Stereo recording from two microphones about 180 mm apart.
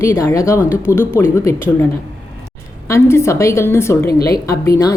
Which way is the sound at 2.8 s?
15° left (ahead or behind).